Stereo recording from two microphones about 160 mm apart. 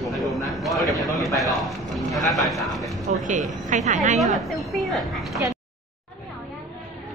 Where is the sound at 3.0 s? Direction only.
50° right (ahead or behind).